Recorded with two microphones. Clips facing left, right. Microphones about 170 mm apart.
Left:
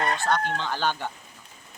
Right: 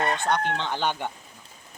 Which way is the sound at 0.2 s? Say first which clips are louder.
Even; 20° right (ahead or behind).